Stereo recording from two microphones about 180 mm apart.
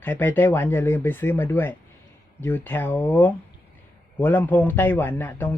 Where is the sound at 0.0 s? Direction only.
10° left (ahead or behind).